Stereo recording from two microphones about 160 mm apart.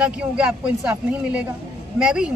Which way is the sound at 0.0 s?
5° right (ahead or behind).